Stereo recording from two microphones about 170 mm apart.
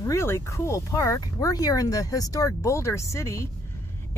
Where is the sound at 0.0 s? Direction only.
15° left (ahead or behind).